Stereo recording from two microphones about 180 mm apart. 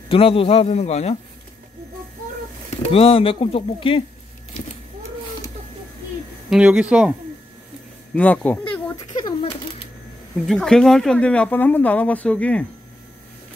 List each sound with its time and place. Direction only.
0.1 s speech: 30° left (ahead or behind)
2.9 s speech: 30° left (ahead or behind)
6.5 s speech: 5° right (ahead or behind)
8.1 s speech: 10° left (ahead or behind)
9.1 s a sound: 25° left (ahead or behind)
10.4 s speech: centre (ahead or behind)